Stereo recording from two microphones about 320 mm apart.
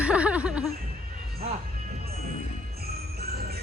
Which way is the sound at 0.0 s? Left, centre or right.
Centre.